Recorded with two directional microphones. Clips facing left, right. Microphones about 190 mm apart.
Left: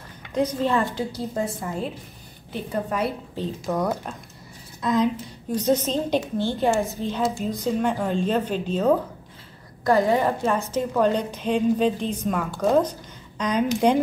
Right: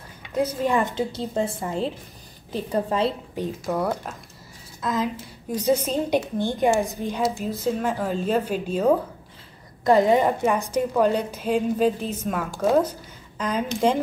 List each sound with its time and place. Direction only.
0.3 s a woman's voice: 10° right (ahead or behind); by 3.2 s 25° right (ahead or behind)
3.6 s a woman's voice: 5° right (ahead or behind)
9.8 s a woman's voice: 20° right (ahead or behind); by 14.0 s centre (ahead or behind)